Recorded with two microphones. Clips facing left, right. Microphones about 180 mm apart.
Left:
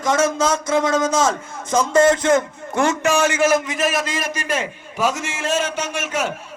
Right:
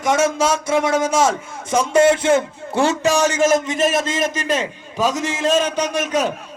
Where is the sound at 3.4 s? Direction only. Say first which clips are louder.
Right 2 dB; 25° right (ahead or behind).